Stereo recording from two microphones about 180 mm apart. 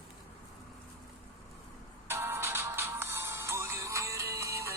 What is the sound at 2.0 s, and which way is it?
Music, 10° right (ahead or behind).